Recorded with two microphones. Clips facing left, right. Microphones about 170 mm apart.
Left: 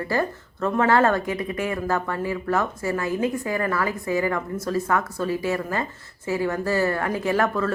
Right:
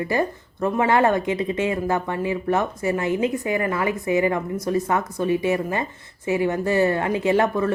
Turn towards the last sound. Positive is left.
turn(degrees=-20)  # may be behind; listen again after turning